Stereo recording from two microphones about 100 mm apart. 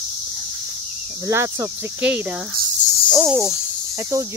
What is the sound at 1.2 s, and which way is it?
Cricket, 30° right (ahead or behind).